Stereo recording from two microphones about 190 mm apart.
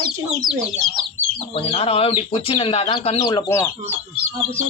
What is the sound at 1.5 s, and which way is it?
Speech, 30° left (ahead or behind).